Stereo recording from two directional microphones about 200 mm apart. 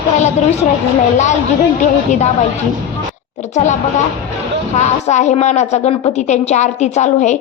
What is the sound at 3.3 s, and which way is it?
Speech, 35° left (ahead or behind).